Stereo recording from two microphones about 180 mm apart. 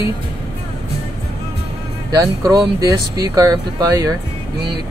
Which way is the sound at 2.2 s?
20° right (ahead or behind).